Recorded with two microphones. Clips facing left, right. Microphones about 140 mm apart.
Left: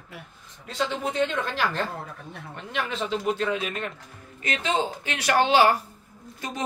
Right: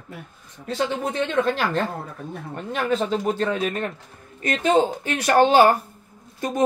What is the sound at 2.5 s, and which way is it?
A man's voice, 45° right (ahead or behind).